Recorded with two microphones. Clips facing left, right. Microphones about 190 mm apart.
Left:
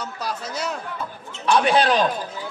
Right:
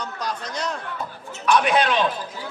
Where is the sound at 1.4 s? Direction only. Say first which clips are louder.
Left 1 dB; 30° left (ahead or behind).